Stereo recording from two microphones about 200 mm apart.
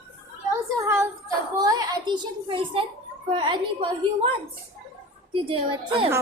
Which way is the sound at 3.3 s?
25° right (ahead or behind).